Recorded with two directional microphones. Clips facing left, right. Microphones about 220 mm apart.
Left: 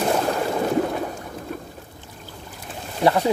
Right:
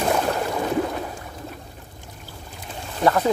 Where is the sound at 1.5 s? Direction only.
50° left (ahead or behind).